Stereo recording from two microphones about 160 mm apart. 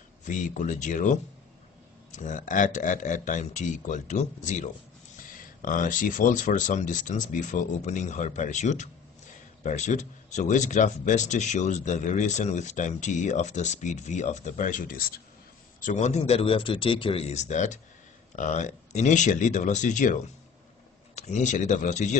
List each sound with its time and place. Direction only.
0.2 s speech: 50° left (ahead or behind)
15.8 s speech: 45° left (ahead or behind)